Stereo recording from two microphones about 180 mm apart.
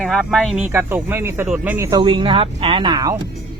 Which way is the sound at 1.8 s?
25° right (ahead or behind).